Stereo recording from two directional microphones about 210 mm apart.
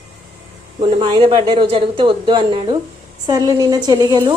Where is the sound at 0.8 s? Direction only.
25° right (ahead or behind).